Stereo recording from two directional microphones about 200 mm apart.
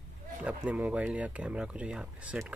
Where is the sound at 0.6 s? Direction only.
5° right (ahead or behind).